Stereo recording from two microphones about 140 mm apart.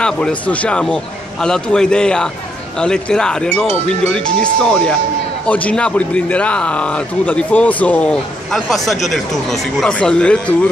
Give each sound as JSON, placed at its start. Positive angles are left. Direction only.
{"t": 0.0, "sound": "speech", "side_deg": 10}